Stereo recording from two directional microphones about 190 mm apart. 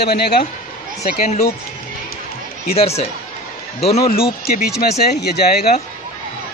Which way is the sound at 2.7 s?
30° left (ahead or behind).